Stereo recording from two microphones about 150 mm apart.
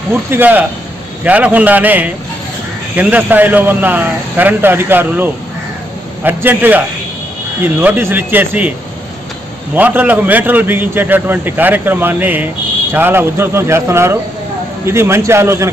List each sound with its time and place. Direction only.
0.1 s a man's voice: 15° right (ahead or behind)
9.8 s a man's voice: 10° right (ahead or behind)